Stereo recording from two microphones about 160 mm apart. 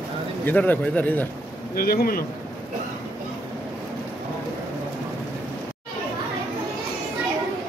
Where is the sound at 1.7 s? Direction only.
70° left (ahead or behind).